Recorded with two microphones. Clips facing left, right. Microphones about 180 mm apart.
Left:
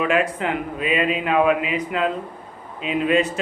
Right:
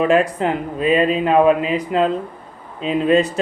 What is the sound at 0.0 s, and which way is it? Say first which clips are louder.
Speech: right 5 dB; 35° right (ahead or behind).